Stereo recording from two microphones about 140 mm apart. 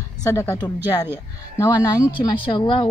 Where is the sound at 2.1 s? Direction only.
35° left (ahead or behind).